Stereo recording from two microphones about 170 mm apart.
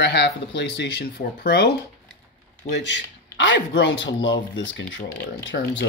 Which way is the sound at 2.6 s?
90° left.